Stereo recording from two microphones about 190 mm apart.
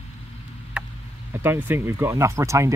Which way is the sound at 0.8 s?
5° right (ahead or behind).